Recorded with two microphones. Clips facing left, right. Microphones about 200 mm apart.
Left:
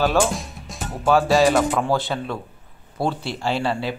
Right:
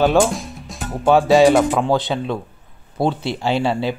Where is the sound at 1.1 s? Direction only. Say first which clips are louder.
Right 5 dB; centre (ahead or behind).